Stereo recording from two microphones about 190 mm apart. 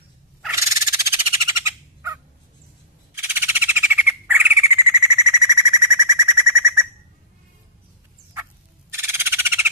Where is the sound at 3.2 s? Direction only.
10° right (ahead or behind).